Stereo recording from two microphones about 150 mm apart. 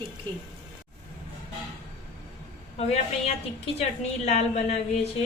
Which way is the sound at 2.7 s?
45° left (ahead or behind).